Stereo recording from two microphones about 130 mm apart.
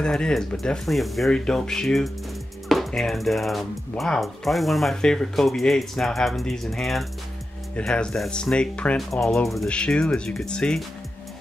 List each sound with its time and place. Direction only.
0.0 s music: 5° left (ahead or behind)
7.7 s speech: 5° left (ahead or behind)